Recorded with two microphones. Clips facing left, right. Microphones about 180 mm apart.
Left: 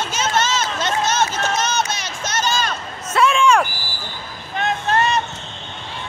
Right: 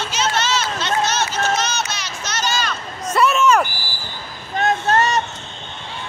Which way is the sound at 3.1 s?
10° right (ahead or behind).